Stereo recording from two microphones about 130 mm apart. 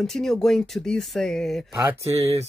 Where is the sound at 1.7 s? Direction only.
20° right (ahead or behind).